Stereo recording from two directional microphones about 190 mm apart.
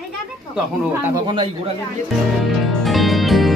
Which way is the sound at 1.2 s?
25° right (ahead or behind).